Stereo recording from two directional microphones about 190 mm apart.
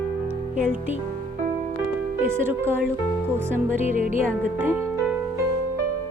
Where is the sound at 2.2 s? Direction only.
10° right (ahead or behind).